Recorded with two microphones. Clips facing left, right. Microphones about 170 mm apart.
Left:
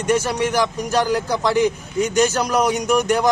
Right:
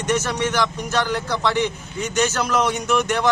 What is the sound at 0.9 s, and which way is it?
Speech, 35° left (ahead or behind).